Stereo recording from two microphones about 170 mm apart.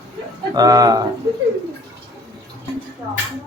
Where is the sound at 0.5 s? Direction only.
20° right (ahead or behind).